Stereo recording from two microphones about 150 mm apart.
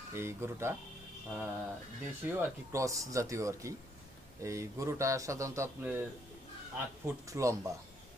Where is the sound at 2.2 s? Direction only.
15° right (ahead or behind).